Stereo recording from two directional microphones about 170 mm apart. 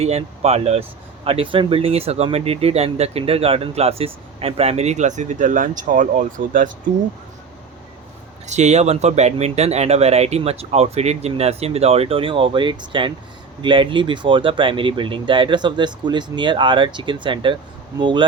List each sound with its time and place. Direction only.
0.0 s speech: 35° right (ahead or behind)
8.4 s speech: 40° right (ahead or behind)